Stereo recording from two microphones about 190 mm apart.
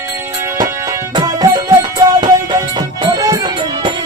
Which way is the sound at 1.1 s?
20° right (ahead or behind).